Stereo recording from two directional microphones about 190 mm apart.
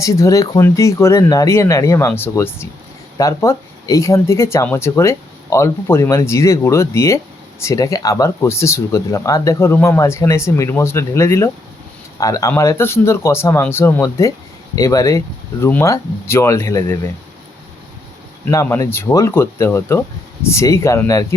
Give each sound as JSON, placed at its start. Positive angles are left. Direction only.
{"t": 0.0, "sound": "speech", "side_deg": 15}
{"t": 18.4, "sound": "speech", "side_deg": 15}